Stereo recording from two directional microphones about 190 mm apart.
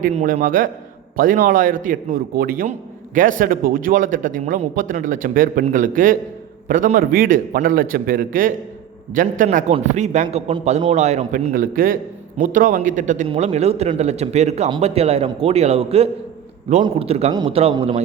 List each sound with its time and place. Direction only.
0.0 s speech: 40° right (ahead or behind)